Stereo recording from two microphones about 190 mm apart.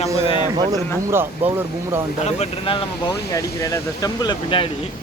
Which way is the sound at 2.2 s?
30° left (ahead or behind).